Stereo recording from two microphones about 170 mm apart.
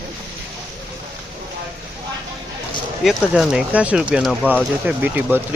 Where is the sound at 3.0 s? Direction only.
Centre (ahead or behind).